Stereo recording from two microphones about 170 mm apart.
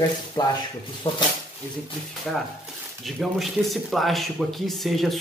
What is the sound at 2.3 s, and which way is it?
Speech, 5° left (ahead or behind).